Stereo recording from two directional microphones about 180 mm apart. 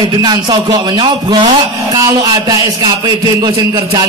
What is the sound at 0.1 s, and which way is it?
Speech, 25° right (ahead or behind).